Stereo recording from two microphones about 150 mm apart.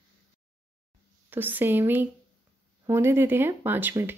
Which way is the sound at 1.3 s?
15° right (ahead or behind).